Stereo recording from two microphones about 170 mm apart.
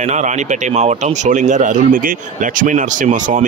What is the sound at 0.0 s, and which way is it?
Speech, 45° right (ahead or behind).